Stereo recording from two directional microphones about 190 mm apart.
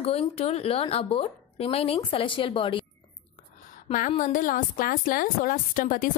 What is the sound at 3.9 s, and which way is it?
Speech, 40° left (ahead or behind).